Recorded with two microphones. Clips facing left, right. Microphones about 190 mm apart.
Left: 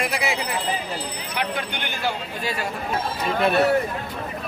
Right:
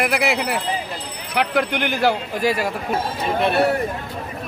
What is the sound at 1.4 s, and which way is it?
Speech, 80° right.